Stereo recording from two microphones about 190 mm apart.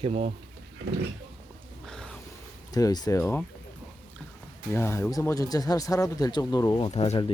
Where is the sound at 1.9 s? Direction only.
5° left (ahead or behind).